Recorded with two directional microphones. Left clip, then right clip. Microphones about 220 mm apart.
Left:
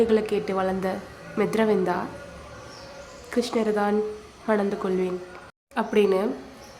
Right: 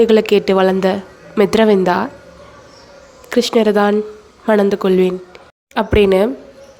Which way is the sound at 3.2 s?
40° right (ahead or behind).